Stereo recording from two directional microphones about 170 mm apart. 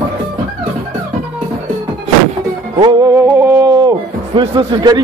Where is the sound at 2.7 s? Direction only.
20° right (ahead or behind).